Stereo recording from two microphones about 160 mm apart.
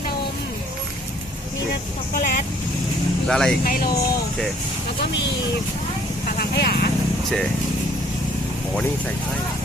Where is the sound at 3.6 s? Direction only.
70° left (ahead or behind).